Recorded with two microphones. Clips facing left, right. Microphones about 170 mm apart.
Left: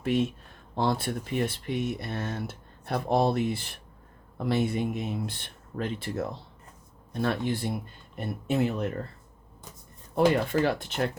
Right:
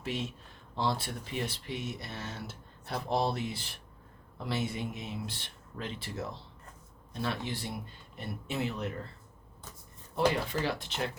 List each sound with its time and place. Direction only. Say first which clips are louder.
0.0 s speech: left 10 dB; 55° left (ahead or behind)
10.2 s speech: left 6 dB; 50° left (ahead or behind)